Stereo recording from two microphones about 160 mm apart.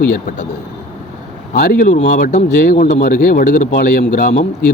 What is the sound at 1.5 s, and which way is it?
A man's voice, 65° left (ahead or behind).